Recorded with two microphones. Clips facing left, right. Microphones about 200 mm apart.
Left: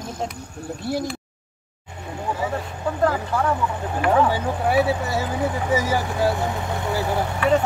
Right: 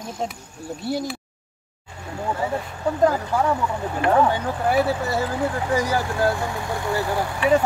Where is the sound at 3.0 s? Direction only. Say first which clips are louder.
Right 2 dB; 15° right (ahead or behind).